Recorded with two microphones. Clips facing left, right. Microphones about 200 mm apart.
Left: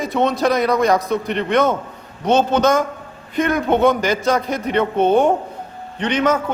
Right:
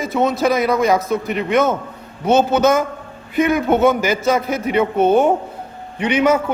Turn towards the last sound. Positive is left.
turn(degrees=-10)  # may be behind; listen again after turning